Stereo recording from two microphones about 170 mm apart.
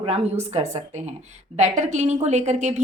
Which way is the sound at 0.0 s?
35° right (ahead or behind).